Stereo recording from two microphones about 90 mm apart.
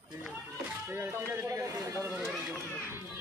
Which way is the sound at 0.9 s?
25° right (ahead or behind).